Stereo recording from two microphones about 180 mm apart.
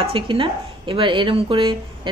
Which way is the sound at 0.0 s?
30° right (ahead or behind).